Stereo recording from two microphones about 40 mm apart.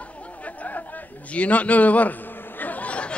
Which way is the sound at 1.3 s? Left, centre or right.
Left.